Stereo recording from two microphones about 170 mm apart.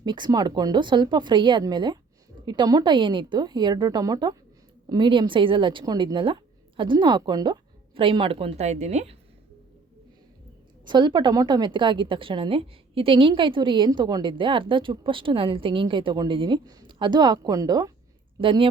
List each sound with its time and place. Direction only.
0.0 s a woman's voice: 25° right (ahead or behind); by 9.1 s 40° right (ahead or behind)
10.8 s a woman's voice: 25° right (ahead or behind)